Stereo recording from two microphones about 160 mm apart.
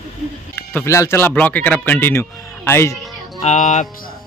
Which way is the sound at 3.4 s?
45° left (ahead or behind).